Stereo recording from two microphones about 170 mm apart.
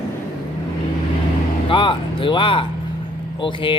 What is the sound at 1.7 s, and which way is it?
A man's voice, 30° left (ahead or behind).